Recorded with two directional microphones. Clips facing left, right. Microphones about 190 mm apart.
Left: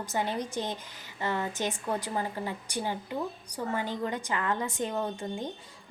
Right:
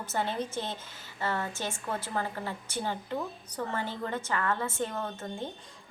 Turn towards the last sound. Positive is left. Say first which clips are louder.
# left 3 dB
turn(degrees=15)  # may be behind; listen again after turning